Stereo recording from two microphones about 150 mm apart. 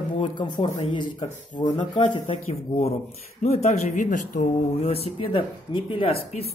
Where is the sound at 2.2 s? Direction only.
45° left (ahead or behind); by 4.9 s 60° left (ahead or behind).